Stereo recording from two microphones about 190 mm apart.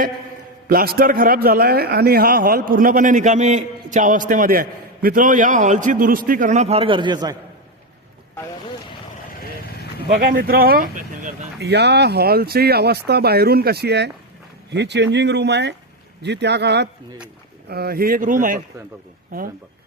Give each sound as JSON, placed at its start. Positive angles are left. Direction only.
{"t": 0.7, "sound": "a man's voice", "side_deg": -50}
{"t": 10.2, "sound": "speech", "side_deg": -50}
{"t": 11.6, "sound": "a man's voice", "side_deg": -60}